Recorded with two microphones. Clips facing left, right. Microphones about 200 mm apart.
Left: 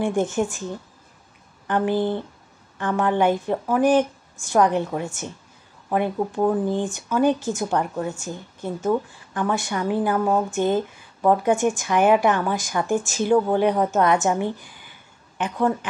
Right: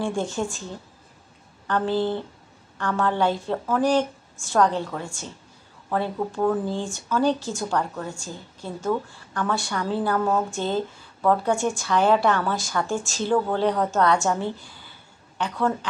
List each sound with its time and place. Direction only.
0.0 s speech: 20° left (ahead or behind)
1.7 s speech: 15° left (ahead or behind)